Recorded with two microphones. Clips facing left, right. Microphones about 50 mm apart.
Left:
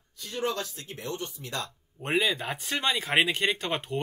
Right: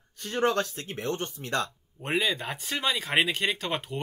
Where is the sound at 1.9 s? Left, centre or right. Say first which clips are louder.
Left 1 dB; centre.